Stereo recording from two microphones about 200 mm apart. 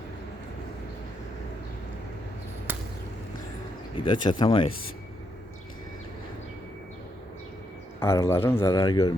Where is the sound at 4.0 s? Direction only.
20° left (ahead or behind).